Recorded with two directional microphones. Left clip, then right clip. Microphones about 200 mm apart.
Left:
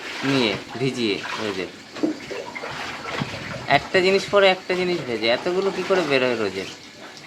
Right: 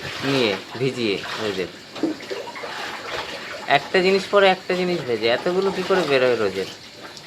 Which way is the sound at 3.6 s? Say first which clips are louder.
Even; centre (ahead or behind).